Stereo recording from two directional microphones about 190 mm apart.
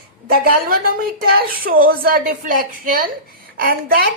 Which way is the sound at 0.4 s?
50° right (ahead or behind).